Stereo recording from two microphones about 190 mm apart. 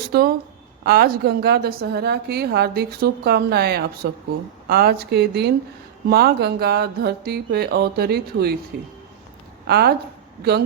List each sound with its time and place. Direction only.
0.1 s a woman's voice: 50° right (ahead or behind)
9.6 s a woman's voice: 55° right (ahead or behind)